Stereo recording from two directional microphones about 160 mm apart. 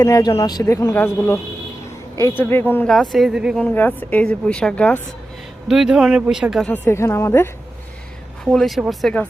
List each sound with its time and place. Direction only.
0.0 s a woman's voice: 20° left (ahead or behind)
2.9 s a woman's voice: centre (ahead or behind)
5.6 s speech: 5° right (ahead or behind)
6.8 s a woman's voice: 15° left (ahead or behind)
8.4 s speech: centre (ahead or behind)